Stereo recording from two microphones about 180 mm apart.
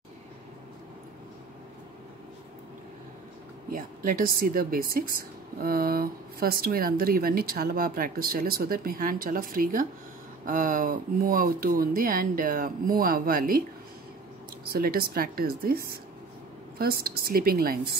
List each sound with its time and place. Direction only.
3.7 s speech: 50° right (ahead or behind)
14.6 s speech: 60° right (ahead or behind)